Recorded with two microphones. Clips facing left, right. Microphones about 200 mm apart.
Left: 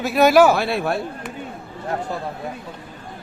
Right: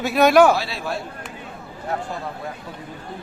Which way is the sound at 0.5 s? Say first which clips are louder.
Left 5 dB; 55° left (ahead or behind).